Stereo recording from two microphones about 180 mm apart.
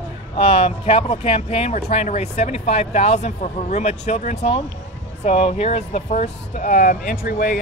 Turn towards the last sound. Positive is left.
turn(degrees=50)  # may be behind; listen again after turning